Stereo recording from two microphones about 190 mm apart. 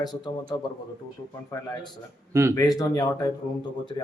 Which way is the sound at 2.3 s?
15° right (ahead or behind).